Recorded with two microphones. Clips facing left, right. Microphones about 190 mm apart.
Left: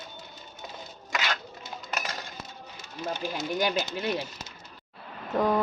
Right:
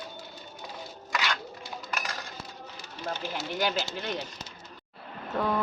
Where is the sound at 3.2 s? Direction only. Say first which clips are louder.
Left 2 dB; 15° left (ahead or behind).